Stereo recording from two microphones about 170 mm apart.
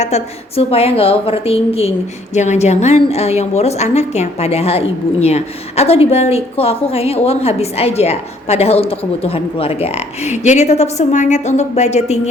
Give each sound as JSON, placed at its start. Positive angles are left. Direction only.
{"t": 0.0, "sound": "a woman's voice", "side_deg": 40}